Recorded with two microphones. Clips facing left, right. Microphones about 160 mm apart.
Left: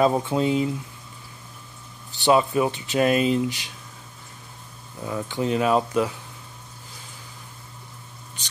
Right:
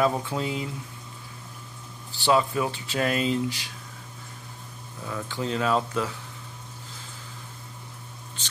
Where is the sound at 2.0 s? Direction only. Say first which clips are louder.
Left 3 dB; 20° left (ahead or behind).